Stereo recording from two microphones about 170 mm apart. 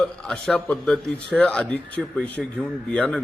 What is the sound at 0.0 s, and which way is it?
A man's voice, 5° left (ahead or behind).